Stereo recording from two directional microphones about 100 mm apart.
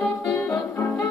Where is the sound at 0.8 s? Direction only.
25° left (ahead or behind).